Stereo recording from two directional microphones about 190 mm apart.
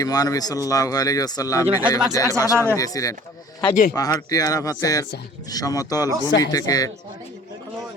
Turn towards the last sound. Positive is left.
turn(degrees=20)  # may be behind; listen again after turning